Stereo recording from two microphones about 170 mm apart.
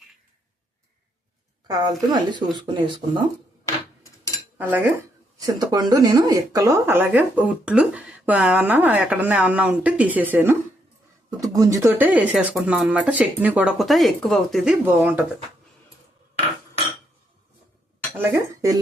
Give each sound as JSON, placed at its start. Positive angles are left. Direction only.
{"t": 1.6, "sound": "speech", "side_deg": -25}
{"t": 4.5, "sound": "speech", "side_deg": -10}
{"t": 5.4, "sound": "speech", "side_deg": -25}
{"t": 18.2, "sound": "speech", "side_deg": -20}